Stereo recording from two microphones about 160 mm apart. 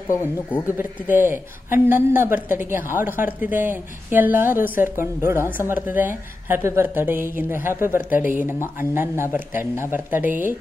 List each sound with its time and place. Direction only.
0.1 s speech: 15° left (ahead or behind)
0.7 s a woman's voice: 10° right (ahead or behind)